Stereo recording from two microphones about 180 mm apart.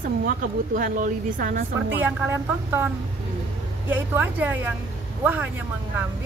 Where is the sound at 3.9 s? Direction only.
10° right (ahead or behind).